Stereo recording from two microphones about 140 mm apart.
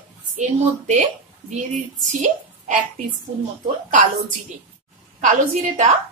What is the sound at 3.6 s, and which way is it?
Speech, 65° right (ahead or behind).